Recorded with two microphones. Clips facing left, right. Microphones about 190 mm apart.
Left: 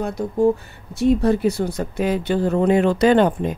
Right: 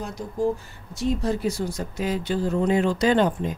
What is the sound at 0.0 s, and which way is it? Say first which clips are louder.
Speech: left 7 dB; 60° left (ahead or behind).